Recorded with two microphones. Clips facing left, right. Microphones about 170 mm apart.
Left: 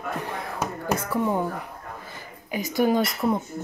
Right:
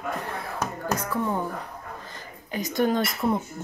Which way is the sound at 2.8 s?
5° left (ahead or behind).